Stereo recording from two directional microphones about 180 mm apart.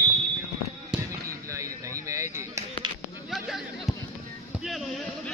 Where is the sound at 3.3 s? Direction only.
Centre (ahead or behind).